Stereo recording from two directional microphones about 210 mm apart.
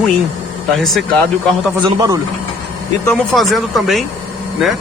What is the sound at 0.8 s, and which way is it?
Speech, centre (ahead or behind).